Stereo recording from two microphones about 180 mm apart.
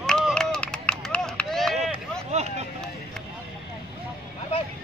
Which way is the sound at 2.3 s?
40° right (ahead or behind).